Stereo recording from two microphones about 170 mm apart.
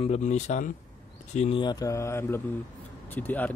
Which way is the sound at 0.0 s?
40° left (ahead or behind).